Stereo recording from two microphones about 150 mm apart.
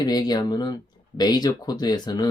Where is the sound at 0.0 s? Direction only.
25° left (ahead or behind).